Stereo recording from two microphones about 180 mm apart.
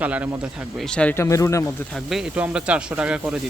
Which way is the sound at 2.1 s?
5° right (ahead or behind).